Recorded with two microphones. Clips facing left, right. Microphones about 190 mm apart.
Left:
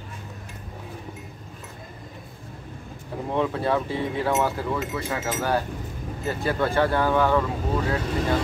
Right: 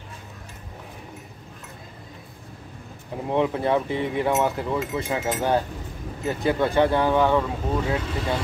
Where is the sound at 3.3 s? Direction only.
20° right (ahead or behind).